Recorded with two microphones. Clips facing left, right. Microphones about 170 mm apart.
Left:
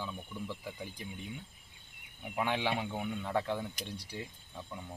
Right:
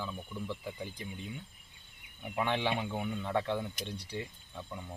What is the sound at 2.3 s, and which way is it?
Speech, 10° left (ahead or behind).